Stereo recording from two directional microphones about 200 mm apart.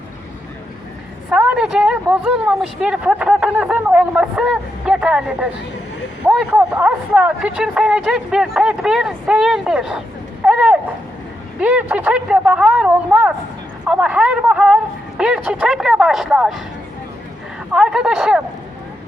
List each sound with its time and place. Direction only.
1.3 s a woman's voice: 5° right (ahead or behind)
10.4 s a sound: 5° right (ahead or behind)
11.6 s a woman's voice: 5° right (ahead or behind)
17.7 s a woman's voice: 5° right (ahead or behind)